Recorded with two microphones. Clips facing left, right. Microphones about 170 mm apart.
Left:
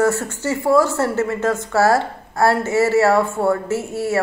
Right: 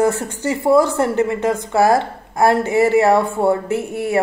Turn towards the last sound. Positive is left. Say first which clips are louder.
# right 1 dB
turn(degrees=-15)  # may be behind; listen again after turning